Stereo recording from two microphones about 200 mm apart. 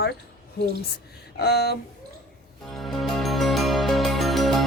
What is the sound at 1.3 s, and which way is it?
Speech, 55° left (ahead or behind).